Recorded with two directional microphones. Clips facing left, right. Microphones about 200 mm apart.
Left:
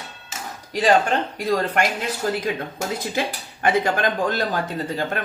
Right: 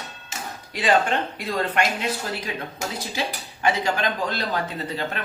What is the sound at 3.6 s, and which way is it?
Speech, 50° left (ahead or behind).